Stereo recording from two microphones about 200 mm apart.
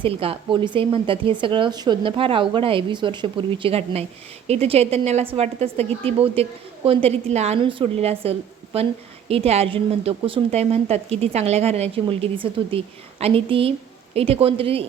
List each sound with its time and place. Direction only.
0.0 s a woman's voice: 30° right (ahead or behind)